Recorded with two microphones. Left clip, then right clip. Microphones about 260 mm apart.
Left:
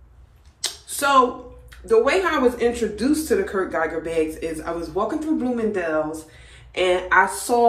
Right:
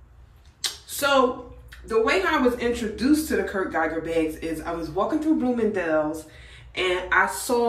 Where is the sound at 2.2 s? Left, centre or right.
Centre.